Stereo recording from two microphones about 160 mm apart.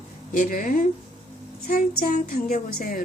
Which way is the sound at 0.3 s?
60° left (ahead or behind).